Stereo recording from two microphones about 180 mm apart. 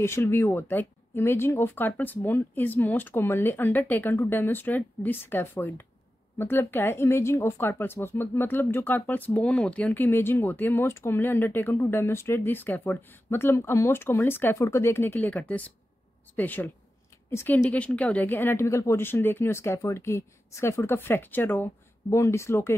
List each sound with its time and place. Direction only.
0.0 s speech: 15° left (ahead or behind)